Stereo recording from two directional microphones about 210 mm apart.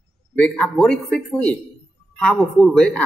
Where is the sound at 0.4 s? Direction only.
5° left (ahead or behind).